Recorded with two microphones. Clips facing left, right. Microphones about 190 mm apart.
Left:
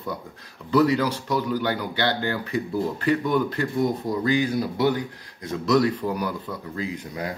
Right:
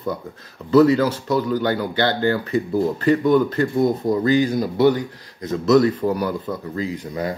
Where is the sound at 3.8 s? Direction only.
40° right (ahead or behind).